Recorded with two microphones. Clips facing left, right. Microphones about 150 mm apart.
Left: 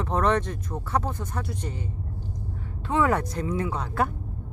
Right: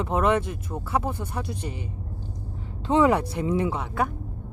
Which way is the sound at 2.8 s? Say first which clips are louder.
Right 4 dB; 20° right (ahead or behind).